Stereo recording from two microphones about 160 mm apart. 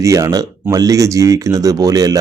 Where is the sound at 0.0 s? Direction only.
20° right (ahead or behind).